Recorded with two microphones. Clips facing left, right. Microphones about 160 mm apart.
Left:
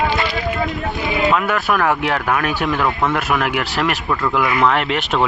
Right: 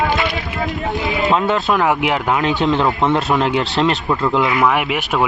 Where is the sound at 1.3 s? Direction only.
25° right (ahead or behind).